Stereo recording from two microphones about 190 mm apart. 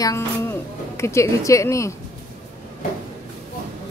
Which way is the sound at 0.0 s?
15° left (ahead or behind).